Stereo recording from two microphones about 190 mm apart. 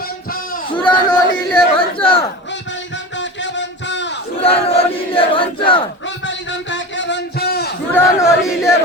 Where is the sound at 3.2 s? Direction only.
70° left (ahead or behind).